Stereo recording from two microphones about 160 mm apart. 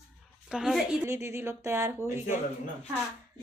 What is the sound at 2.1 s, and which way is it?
Speech, 50° left (ahead or behind).